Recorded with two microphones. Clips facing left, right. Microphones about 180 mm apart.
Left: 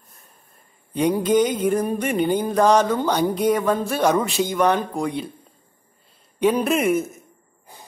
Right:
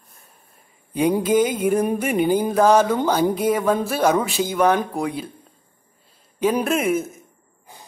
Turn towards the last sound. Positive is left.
turn(degrees=0)  # may be behind; listen again after turning